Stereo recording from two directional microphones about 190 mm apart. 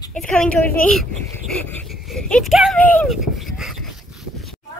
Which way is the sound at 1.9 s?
Centre (ahead or behind).